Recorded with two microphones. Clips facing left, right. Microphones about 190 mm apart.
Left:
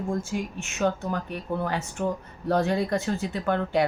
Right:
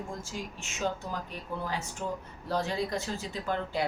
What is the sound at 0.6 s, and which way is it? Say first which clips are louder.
Speech: left 6 dB; 60° left (ahead or behind).